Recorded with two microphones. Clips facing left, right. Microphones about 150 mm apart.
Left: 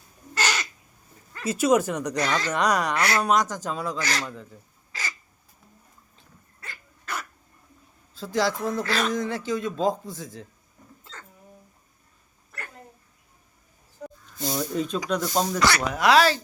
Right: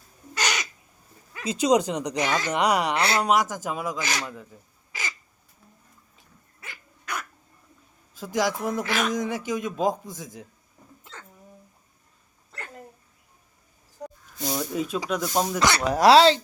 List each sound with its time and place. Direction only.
0.4 s crow: 10° right (ahead or behind)
1.3 s speech: 15° right (ahead or behind)
2.9 s speech: 25° right (ahead or behind)
3.2 s speech: 10° right (ahead or behind)
4.9 s crow: 20° right (ahead or behind)
6.1 s dog: 15° right (ahead or behind)
8.1 s speech: 15° right (ahead or behind)
11.0 s hiccup: 15° right (ahead or behind)
14.3 s snake: 10° right (ahead or behind)
15.1 s speech: 5° right (ahead or behind)
15.9 s speech: 35° right (ahead or behind)